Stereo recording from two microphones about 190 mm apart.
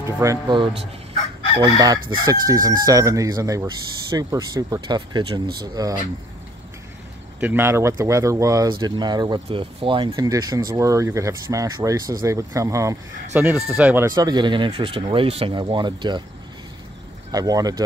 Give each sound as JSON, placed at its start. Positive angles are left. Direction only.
{"t": 0.0, "sound": "speech", "side_deg": -15}
{"t": 7.3, "sound": "speech", "side_deg": -10}
{"t": 17.3, "sound": "speech", "side_deg": -20}